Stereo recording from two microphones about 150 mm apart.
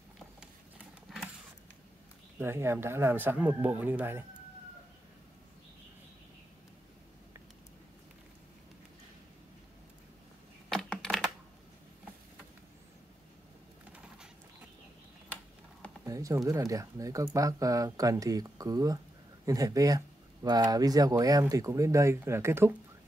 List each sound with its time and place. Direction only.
1.1 s a sound: centre (ahead or behind)
2.3 s speech: 15° right (ahead or behind)
10.7 s typing: 5° left (ahead or behind)
16.0 s speech: 20° right (ahead or behind)